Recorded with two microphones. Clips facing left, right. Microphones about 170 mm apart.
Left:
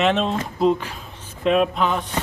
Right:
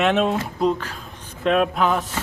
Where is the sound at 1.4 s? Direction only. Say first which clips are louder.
Even; centre (ahead or behind).